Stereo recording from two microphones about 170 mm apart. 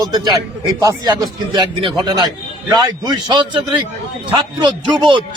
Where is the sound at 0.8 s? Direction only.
25° right (ahead or behind).